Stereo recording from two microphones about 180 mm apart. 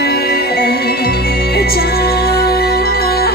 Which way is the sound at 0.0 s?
60° left (ahead or behind).